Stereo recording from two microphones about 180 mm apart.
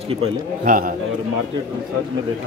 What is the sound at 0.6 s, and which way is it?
Speech, 50° right (ahead or behind).